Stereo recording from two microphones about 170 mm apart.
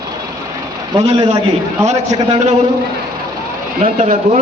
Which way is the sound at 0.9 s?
25° right (ahead or behind).